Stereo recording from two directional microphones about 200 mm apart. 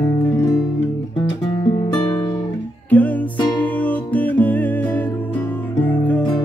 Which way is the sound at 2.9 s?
10° left (ahead or behind).